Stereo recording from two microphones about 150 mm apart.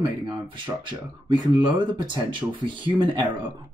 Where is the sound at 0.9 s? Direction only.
30° right (ahead or behind).